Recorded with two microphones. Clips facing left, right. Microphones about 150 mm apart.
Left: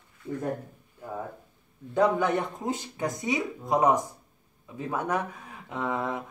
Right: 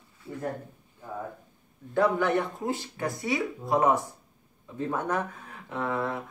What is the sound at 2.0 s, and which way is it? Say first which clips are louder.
Speech: even; 20° left (ahead or behind).